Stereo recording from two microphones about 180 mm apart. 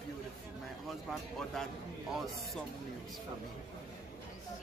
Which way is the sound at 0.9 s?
Centre (ahead or behind).